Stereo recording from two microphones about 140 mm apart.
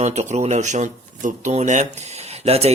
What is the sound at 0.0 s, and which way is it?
Speech, 55° right (ahead or behind).